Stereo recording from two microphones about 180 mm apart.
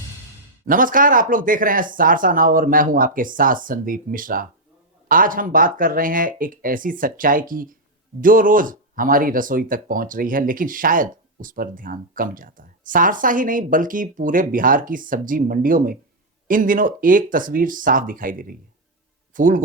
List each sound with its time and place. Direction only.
0.6 s speech: 50° right (ahead or behind)